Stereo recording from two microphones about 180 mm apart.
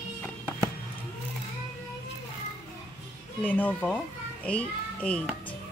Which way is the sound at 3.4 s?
10° left (ahead or behind).